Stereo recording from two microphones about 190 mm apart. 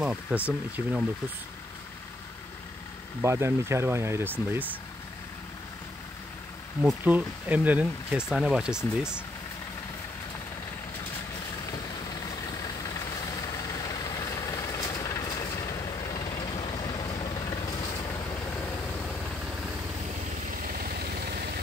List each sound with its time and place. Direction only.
0.0 s speech: 5° right (ahead or behind)
3.2 s speech: 15° right (ahead or behind)
6.8 s speech: 5° right (ahead or behind)
11.7 s vehicle: 20° left (ahead or behind)
20.6 s vehicle: 55° right (ahead or behind)